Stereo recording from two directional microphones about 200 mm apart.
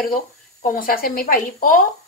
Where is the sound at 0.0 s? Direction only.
45° left (ahead or behind).